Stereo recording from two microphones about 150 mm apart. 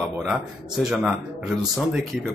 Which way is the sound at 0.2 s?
Centre (ahead or behind).